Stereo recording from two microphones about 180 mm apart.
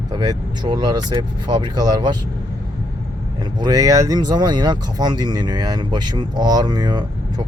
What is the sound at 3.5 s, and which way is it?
Speech, 20° right (ahead or behind).